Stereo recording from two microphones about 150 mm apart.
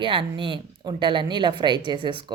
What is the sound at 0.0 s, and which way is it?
A woman's voice, 35° right (ahead or behind).